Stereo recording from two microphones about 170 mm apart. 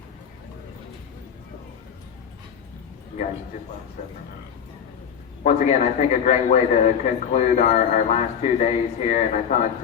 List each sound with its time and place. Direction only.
5.4 s a man's voice: 40° left (ahead or behind)